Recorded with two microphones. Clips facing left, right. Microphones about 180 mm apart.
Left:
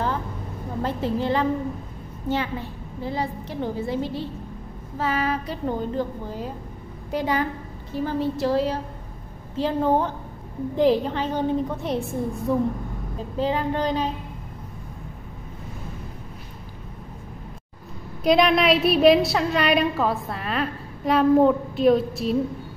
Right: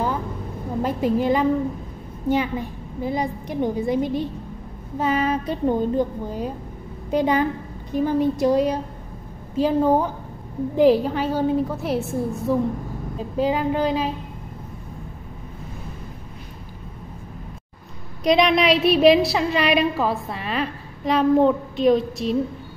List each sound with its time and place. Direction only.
0.8 s a woman's voice: 15° right (ahead or behind)
18.2 s a woman's voice: 5° left (ahead or behind)